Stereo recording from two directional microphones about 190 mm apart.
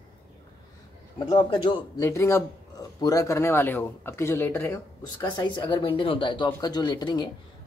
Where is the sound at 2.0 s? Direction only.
15° left (ahead or behind).